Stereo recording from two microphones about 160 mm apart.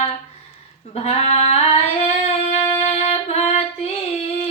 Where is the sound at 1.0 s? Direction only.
40° left (ahead or behind).